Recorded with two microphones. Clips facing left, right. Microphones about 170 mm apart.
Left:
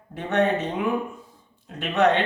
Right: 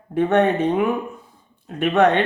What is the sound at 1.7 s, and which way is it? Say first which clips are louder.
Speech: right 5 dB; 55° right (ahead or behind).